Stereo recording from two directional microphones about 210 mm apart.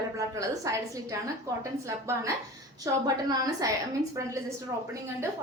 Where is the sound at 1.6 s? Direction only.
15° right (ahead or behind).